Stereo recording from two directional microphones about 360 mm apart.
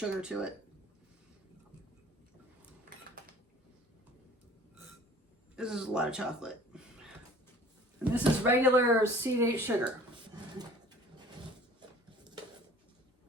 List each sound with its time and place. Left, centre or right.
0.0 s speech: centre
5.5 s speech: centre
8.1 s speech: centre